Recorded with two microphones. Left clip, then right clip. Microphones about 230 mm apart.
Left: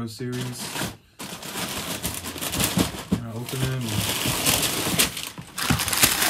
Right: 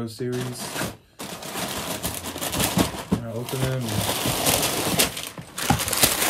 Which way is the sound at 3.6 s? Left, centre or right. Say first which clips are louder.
Right 1 dB; centre.